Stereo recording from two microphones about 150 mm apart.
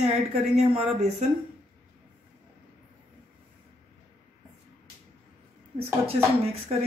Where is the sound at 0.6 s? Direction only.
50° right (ahead or behind).